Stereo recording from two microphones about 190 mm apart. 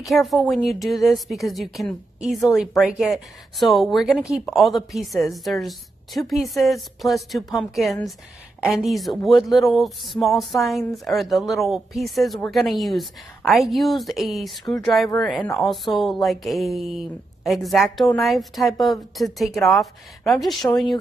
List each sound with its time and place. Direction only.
0.0 s a woman's voice: centre (ahead or behind)
20.7 s speech: 20° left (ahead or behind)